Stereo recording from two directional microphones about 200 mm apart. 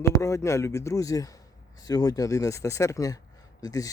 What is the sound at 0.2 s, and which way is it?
Speech, 15° left (ahead or behind).